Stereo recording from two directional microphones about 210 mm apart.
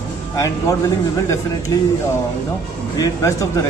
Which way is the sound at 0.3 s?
15° left (ahead or behind).